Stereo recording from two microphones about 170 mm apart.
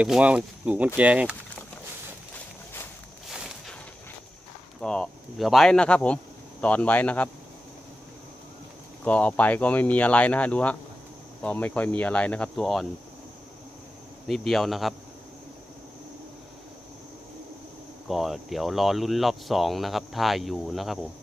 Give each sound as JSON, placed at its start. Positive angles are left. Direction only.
{"t": 0.0, "sound": "speech", "side_deg": -5}
{"t": 3.3, "sound": "walk", "side_deg": -5}
{"t": 4.7, "sound": "speech", "side_deg": 5}
{"t": 9.0, "sound": "speech", "side_deg": 10}
{"t": 14.2, "sound": "speech", "side_deg": 0}
{"t": 18.0, "sound": "speech", "side_deg": 0}